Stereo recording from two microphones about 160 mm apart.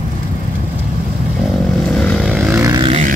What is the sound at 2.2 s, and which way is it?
Vehicle, 5° right (ahead or behind).